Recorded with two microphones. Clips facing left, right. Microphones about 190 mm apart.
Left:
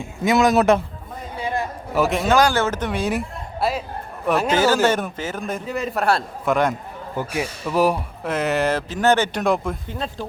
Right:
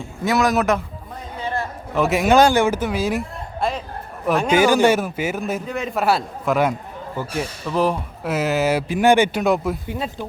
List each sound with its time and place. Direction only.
0.0 s speech: 20° left (ahead or behind)
1.4 s a sound: 10° left (ahead or behind)
2.0 s speech: 10° right (ahead or behind)
2.3 s a man's voice: 20° right (ahead or behind); by 4.5 s centre (ahead or behind)
4.5 s a man's voice: 15° right (ahead or behind)
7.2 s speech: 10° left (ahead or behind)
8.2 s a man's voice: 5° right (ahead or behind)